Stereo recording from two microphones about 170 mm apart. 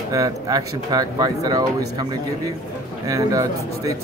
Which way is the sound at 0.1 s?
20° right (ahead or behind).